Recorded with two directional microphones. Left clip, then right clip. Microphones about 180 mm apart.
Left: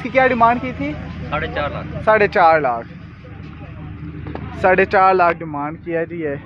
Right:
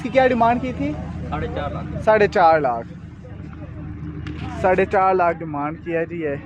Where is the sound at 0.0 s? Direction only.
25° right (ahead or behind).